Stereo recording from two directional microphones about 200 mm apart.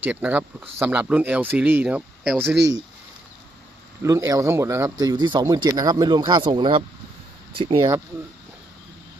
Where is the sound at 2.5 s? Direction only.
60° right (ahead or behind).